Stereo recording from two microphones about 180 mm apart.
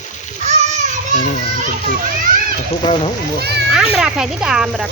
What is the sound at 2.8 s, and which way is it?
Speech, 30° left (ahead or behind).